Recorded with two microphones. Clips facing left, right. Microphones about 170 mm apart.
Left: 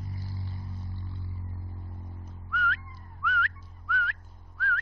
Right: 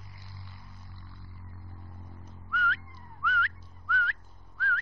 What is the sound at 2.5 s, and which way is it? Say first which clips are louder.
Whistling: left 1 dB; centre (ahead or behind).